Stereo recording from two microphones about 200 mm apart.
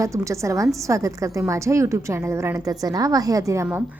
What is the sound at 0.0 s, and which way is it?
A woman's voice, 15° right (ahead or behind).